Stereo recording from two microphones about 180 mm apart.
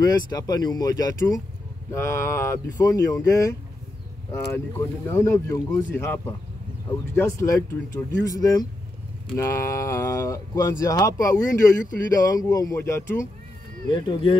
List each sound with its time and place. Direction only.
0.0 s speech: 20° left (ahead or behind)
13.9 s speech: 25° left (ahead or behind)